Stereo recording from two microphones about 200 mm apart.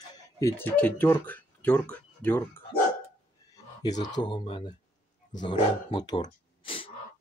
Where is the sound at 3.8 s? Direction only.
20° left (ahead or behind).